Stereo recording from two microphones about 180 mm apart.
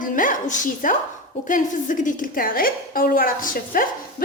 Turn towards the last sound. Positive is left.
turn(degrees=50)  # may be behind; listen again after turning